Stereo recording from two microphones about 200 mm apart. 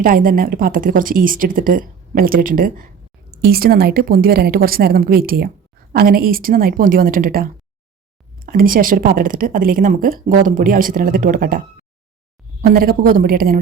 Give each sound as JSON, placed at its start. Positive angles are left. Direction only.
{"t": 0.0, "sound": "a woman's voice", "side_deg": -45}
{"t": 8.4, "sound": "a woman's voice", "side_deg": -45}
{"t": 12.6, "sound": "a woman's voice", "side_deg": -50}